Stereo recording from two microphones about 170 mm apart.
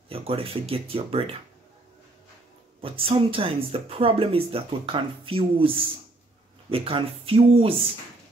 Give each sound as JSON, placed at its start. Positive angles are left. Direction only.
{"t": 0.1, "sound": "speech", "side_deg": -35}
{"t": 2.8, "sound": "speech", "side_deg": -30}